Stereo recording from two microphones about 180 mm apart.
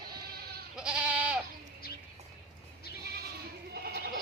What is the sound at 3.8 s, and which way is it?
Sheep, 60° right (ahead or behind).